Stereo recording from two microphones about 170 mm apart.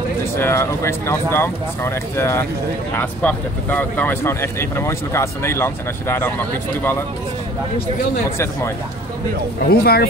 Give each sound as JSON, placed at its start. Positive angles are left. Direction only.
{"t": 0.4, "sound": "speech", "side_deg": 15}
{"t": 9.7, "sound": "speech", "side_deg": 65}